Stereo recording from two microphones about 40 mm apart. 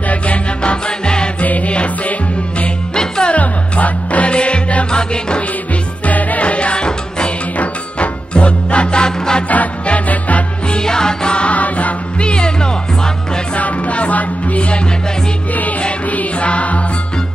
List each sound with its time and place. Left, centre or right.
0.6 s music: left
1.4 s music: left
2.9 s music: centre
3.3 s music: left
6.0 s music: left
7.5 s music: left
9.5 s music: left
10.7 s music: centre
11.5 s music: left
13.6 s music: left
16.1 s music: left